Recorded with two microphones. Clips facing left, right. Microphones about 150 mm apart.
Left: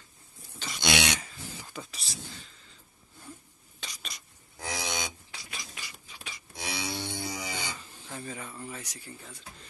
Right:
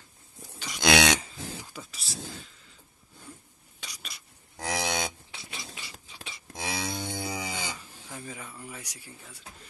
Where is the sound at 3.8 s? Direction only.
10° right (ahead or behind).